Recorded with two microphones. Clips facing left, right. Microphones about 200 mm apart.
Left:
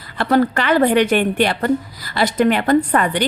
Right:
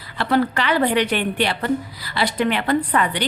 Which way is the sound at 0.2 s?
45° left (ahead or behind).